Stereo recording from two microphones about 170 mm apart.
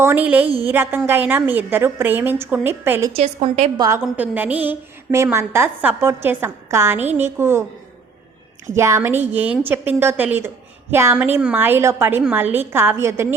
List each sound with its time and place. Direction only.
0.0 s a woman's voice: 10° right (ahead or behind)
3.2 s a woman's voice: 40° right (ahead or behind)
3.8 s a woman's voice: 20° right (ahead or behind)
8.7 s a woman's voice: 15° right (ahead or behind)